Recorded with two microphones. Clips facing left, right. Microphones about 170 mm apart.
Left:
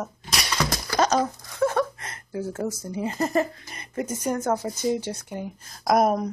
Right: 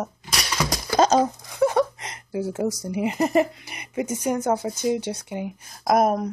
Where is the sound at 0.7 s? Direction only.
20° right (ahead or behind).